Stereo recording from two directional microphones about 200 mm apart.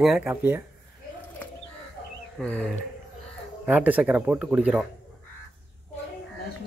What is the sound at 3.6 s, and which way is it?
Speech, 10° right (ahead or behind).